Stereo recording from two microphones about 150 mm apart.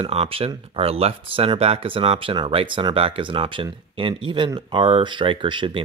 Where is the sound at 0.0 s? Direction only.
40° right (ahead or behind).